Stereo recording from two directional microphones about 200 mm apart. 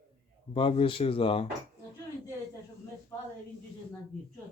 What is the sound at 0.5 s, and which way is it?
Speech, 25° left (ahead or behind).